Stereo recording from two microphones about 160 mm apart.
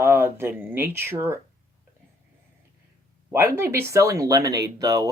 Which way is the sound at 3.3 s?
15° right (ahead or behind).